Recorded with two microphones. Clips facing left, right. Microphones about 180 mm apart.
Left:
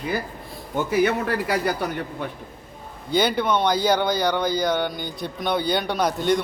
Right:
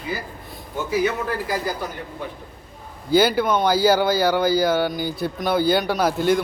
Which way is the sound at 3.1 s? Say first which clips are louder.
Right 3 dB; 5° right (ahead or behind).